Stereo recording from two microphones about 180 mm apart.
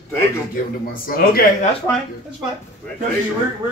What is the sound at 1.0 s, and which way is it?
Speech, 55° left (ahead or behind).